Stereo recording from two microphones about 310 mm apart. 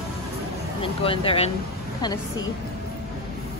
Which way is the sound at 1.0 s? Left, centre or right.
Centre.